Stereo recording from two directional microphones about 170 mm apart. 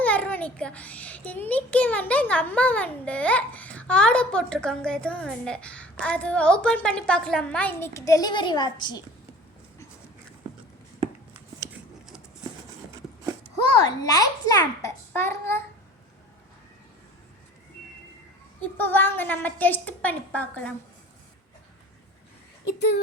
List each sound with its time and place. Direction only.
0.0 s a child's voice: 10° left (ahead or behind); by 9.0 s 25° left (ahead or behind)
11.3 s a sound: 10° right (ahead or behind)
13.6 s a child's voice: 25° left (ahead or behind)
18.6 s a child's voice: 10° left (ahead or behind)